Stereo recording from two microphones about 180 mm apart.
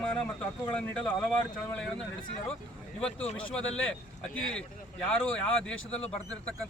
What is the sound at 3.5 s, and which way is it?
Speech, 5° left (ahead or behind).